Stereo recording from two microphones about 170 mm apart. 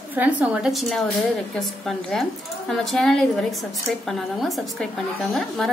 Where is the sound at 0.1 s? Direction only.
10° right (ahead or behind).